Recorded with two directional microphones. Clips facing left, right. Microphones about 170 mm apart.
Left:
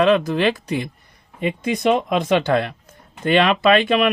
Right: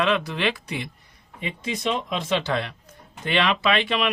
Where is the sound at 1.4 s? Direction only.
55° left (ahead or behind).